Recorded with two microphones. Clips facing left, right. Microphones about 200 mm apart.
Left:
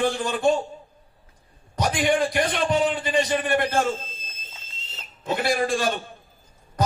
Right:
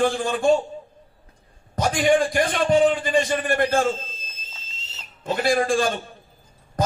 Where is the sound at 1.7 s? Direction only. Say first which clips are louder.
Right 3 dB; 50° right (ahead or behind).